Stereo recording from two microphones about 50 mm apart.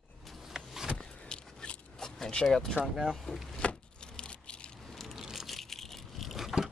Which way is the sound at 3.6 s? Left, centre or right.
Left.